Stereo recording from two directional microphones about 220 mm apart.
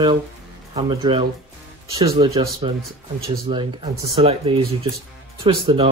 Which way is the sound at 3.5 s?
25° right (ahead or behind).